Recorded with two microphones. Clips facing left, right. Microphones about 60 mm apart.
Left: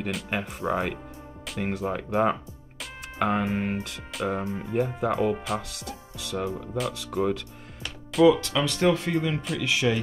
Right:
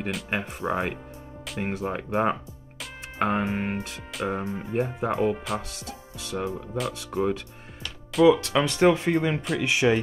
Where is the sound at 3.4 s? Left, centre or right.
Centre.